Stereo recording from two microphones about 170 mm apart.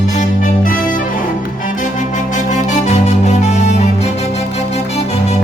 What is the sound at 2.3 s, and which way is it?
Music, 45° left (ahead or behind).